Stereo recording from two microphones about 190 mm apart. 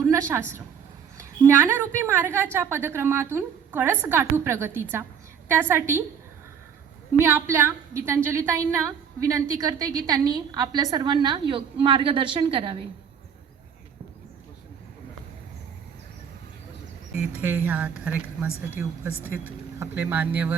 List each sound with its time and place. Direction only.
0.0 s a sound: 15° right (ahead or behind)
1.2 s a woman's voice: 15° right (ahead or behind)
7.3 s a woman's voice: 10° right (ahead or behind)
17.2 s a woman's voice: 10° right (ahead or behind)